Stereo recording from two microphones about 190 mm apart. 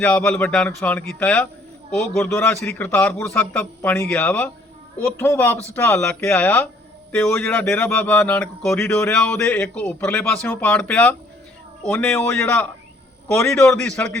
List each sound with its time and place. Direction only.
0.0 s a man's voice: 10° left (ahead or behind)